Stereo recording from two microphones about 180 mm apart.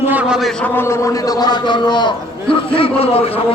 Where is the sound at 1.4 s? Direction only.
25° left (ahead or behind).